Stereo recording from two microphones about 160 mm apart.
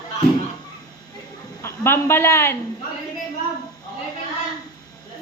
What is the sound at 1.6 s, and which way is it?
Speech, 15° left (ahead or behind).